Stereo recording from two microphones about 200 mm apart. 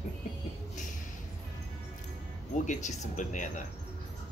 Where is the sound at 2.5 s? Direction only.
40° left (ahead or behind).